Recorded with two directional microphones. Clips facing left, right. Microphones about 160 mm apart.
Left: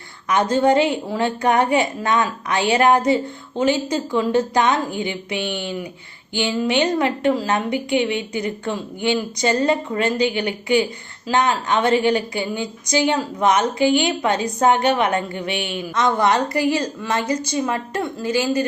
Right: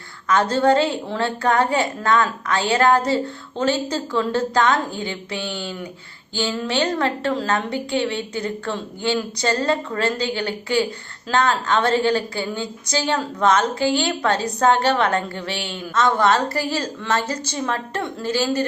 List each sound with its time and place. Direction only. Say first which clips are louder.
0.3 s a woman's voice: even; 15° left (ahead or behind)